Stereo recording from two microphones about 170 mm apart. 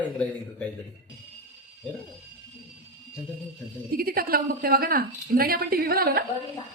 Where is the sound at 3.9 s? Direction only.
60° right (ahead or behind).